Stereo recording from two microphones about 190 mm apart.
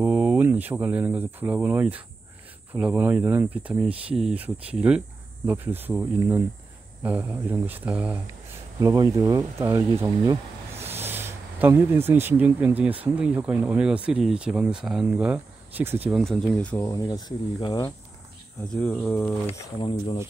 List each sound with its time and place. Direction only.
0.0 s speech: 5° right (ahead or behind)
8.7 s speech: 20° right (ahead or behind)
16.1 s speech: centre (ahead or behind); by 17.9 s 20° left (ahead or behind)
18.7 s speech: 5° left (ahead or behind)
19.8 s speech: 25° left (ahead or behind)